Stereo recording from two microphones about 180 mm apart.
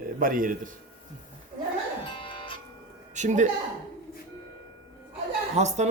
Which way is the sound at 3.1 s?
40° right (ahead or behind).